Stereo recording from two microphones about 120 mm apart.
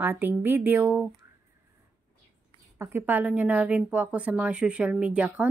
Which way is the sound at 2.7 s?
15° right (ahead or behind).